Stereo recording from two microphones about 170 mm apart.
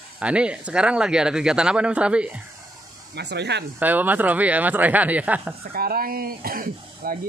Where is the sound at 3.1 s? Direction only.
80° right.